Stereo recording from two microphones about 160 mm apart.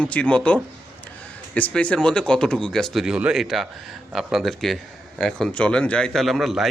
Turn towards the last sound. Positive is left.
turn(degrees=0)  # may be behind; listen again after turning